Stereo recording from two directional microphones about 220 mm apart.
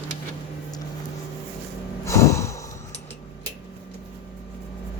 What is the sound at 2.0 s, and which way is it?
Snort, 15° left (ahead or behind).